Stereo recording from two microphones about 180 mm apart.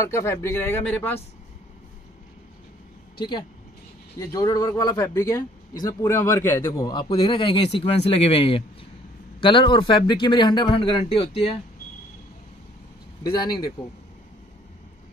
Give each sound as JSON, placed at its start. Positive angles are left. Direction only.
{"t": 0.0, "sound": "speech", "side_deg": 15}
{"t": 3.2, "sound": "speech", "side_deg": 25}
{"t": 13.2, "sound": "speech", "side_deg": 20}